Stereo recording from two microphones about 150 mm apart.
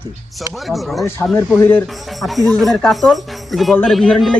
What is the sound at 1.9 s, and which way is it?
A man's voice, centre (ahead or behind).